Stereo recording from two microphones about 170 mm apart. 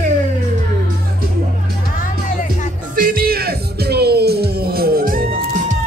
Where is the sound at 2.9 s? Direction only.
55° right (ahead or behind).